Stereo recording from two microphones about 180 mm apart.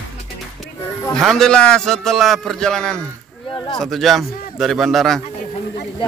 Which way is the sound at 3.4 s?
25° left (ahead or behind).